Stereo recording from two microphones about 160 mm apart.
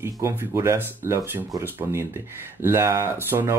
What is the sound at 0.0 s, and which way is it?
Speech, 15° right (ahead or behind).